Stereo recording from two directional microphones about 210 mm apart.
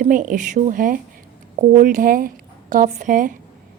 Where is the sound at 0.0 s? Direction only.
40° right (ahead or behind).